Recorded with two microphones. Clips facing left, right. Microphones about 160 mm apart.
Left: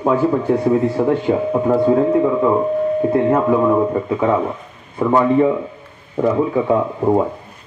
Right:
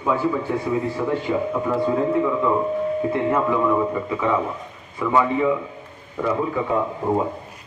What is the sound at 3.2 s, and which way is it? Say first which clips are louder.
A man's voice: left 4 dB; 45° left (ahead or behind).